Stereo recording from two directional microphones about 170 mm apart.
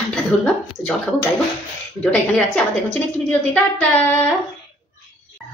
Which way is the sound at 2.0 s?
5° left (ahead or behind).